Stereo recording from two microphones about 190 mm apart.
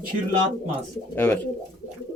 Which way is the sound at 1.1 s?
10° left (ahead or behind).